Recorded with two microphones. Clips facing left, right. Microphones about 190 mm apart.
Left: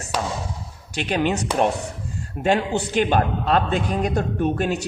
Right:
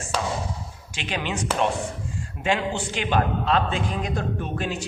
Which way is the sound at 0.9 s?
45° left (ahead or behind).